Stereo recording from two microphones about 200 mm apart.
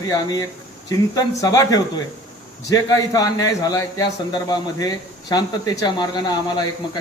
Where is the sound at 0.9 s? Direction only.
20° left (ahead or behind).